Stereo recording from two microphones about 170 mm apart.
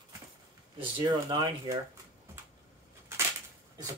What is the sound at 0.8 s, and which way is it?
Speech, 25° right (ahead or behind).